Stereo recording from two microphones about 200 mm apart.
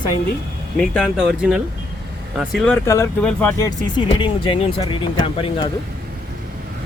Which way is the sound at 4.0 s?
25° left (ahead or behind).